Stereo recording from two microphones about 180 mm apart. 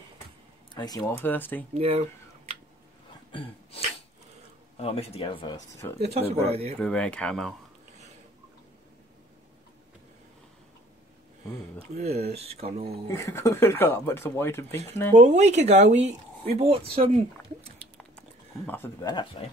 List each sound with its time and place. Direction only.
0.7 s speech: 20° left (ahead or behind)
1.2 s speech: 10° left (ahead or behind)
1.7 s speech: 35° right (ahead or behind)
3.3 s a sound: 30° left (ahead or behind)
4.7 s speech: 35° left (ahead or behind)
5.9 s speech: 35° right (ahead or behind)
6.8 s speech: 5° left (ahead or behind)
11.9 s speech: 35° right (ahead or behind)
13.1 s speech: 15° left (ahead or behind)
15.1 s speech: 40° right (ahead or behind)
18.8 s speech: 15° left (ahead or behind)
19.4 s speech: 30° left (ahead or behind)